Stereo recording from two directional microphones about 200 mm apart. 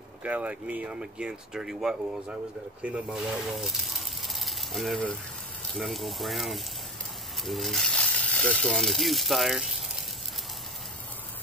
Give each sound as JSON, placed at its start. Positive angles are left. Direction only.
{"t": 0.2, "sound": "speech", "side_deg": -5}